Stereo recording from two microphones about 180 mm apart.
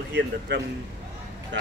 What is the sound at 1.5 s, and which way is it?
Speech, 80° right.